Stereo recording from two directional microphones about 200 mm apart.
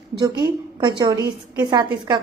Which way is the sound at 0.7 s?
20° right (ahead or behind).